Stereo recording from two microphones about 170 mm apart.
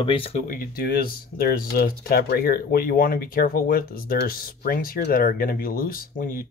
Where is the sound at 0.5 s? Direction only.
60° left (ahead or behind).